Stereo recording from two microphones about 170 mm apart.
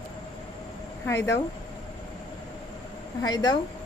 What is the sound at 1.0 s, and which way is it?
Speech, 15° left (ahead or behind).